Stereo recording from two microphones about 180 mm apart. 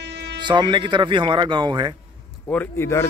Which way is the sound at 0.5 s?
25° right (ahead or behind).